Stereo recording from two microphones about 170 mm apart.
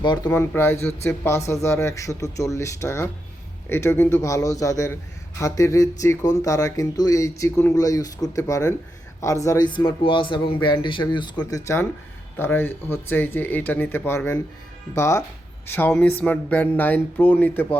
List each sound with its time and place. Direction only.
0.0 s speech: 25° left (ahead or behind)
0.3 s speech: 15° left (ahead or behind)